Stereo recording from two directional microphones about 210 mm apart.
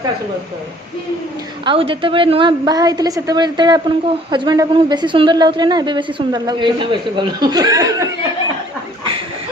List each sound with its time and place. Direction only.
1.6 s a woman's voice: 25° right (ahead or behind)